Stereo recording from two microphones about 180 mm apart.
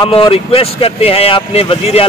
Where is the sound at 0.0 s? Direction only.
30° left (ahead or behind).